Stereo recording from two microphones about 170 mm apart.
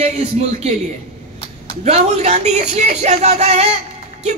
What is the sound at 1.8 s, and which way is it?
A man's voice, 40° right (ahead or behind).